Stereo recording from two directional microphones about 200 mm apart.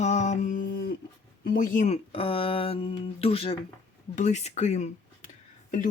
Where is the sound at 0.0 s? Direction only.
35° left (ahead or behind).